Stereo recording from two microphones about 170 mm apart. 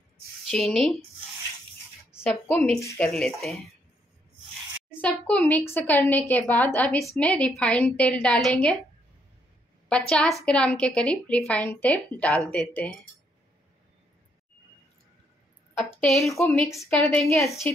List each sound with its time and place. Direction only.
0.5 s speech: centre (ahead or behind)
2.2 s speech: 5° left (ahead or behind)
5.0 s a woman's voice: 10° left (ahead or behind)
9.8 s a woman's voice: 5° left (ahead or behind)
15.8 s a woman's voice: 5° left (ahead or behind)